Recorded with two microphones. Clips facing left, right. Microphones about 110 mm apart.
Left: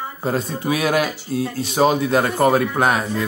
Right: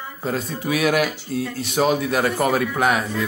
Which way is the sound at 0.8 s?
30° left (ahead or behind).